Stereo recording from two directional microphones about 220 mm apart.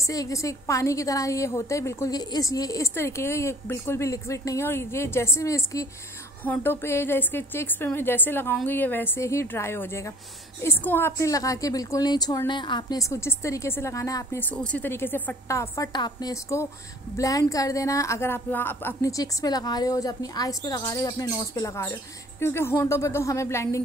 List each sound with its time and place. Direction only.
0.0 s a woman's voice: 15° left (ahead or behind)